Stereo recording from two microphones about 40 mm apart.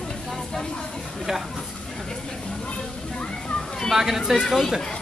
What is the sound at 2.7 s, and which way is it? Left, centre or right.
Children playing, left.